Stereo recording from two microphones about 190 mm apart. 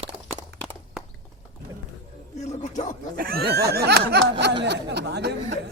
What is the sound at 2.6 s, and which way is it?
Dog, 40° left (ahead or behind).